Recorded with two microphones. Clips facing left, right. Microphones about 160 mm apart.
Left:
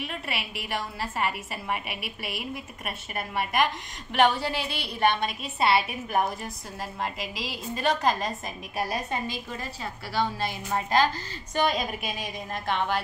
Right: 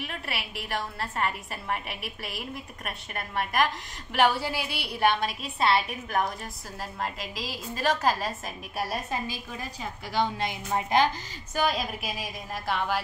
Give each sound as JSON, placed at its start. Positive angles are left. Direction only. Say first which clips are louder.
{"t": 0.0, "sound": "a woman's voice", "louder": "left 2 dB", "side_deg": 0}
{"t": 10.1, "sound": "a woman's voice", "louder": "even", "side_deg": -20}
{"t": 11.5, "sound": "a woman's voice", "louder": "left 2 dB", "side_deg": 0}